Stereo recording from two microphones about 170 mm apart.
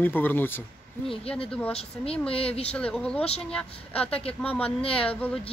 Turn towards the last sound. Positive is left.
turn(degrees=35)  # may be behind; listen again after turning